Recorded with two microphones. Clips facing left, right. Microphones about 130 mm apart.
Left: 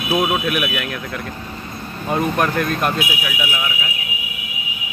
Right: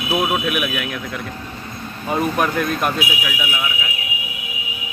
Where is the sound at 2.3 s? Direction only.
5° right (ahead or behind).